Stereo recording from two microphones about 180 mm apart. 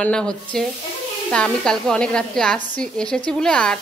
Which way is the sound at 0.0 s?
5° left (ahead or behind).